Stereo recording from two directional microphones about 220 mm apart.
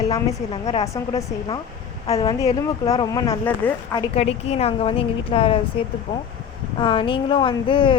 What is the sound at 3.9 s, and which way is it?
Speech, 25° left (ahead or behind).